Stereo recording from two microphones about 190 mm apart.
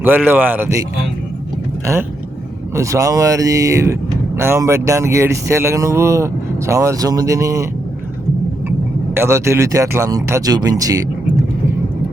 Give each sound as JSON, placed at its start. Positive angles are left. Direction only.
{"t": 0.0, "sound": "speech", "side_deg": -10}
{"t": 2.7, "sound": "speech", "side_deg": -15}
{"t": 9.1, "sound": "speech", "side_deg": -15}